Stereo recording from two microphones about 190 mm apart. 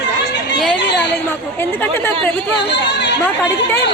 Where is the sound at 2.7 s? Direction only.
65° left (ahead or behind).